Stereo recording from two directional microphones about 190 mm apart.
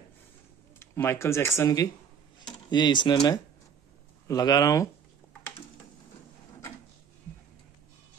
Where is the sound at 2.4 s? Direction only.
25° left (ahead or behind).